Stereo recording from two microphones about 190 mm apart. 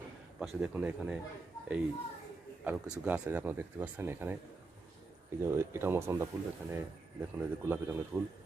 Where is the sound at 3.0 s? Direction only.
10° right (ahead or behind).